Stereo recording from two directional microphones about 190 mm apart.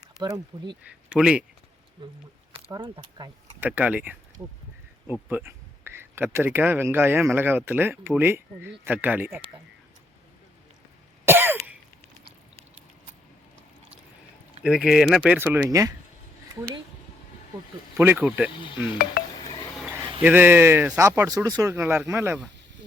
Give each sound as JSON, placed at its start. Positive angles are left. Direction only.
{"t": 0.2, "sound": "speech", "side_deg": -20}
{"t": 0.8, "sound": "speech", "side_deg": -5}
{"t": 2.6, "sound": "speech", "side_deg": -25}
{"t": 3.6, "sound": "speech", "side_deg": -5}
{"t": 11.3, "sound": "cough", "side_deg": -10}
{"t": 14.6, "sound": "speech", "side_deg": 0}
{"t": 17.9, "sound": "speech", "side_deg": -10}
{"t": 19.2, "sound": "chink", "side_deg": 50}
{"t": 19.7, "sound": "a sound", "side_deg": -5}
{"t": 20.2, "sound": "speech", "side_deg": -10}